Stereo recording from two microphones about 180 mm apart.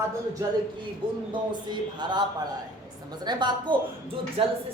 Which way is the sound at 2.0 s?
25° right (ahead or behind).